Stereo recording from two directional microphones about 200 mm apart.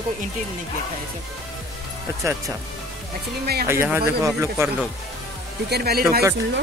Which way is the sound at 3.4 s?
50° right (ahead or behind).